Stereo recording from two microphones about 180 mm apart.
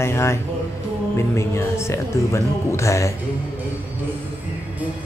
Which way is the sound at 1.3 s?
15° left (ahead or behind).